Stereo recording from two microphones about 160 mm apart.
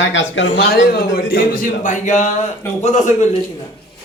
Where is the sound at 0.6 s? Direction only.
75° left (ahead or behind); by 3.3 s 45° left (ahead or behind).